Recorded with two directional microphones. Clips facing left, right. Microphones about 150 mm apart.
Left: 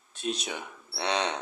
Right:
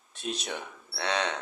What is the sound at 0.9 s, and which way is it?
Speech, 20° left (ahead or behind).